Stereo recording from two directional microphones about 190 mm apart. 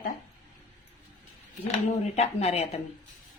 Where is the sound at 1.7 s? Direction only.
35° left (ahead or behind).